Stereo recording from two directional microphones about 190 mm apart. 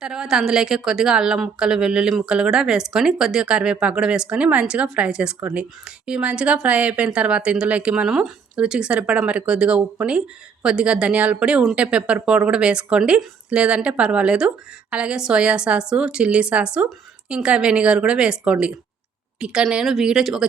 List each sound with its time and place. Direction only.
0.0 s speech: 5° right (ahead or behind)